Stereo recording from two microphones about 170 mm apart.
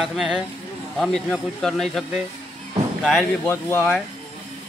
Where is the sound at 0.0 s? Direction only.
Centre (ahead or behind).